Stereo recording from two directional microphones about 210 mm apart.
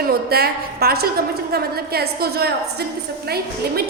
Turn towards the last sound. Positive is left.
turn(degrees=-50)  # may be behind; listen again after turning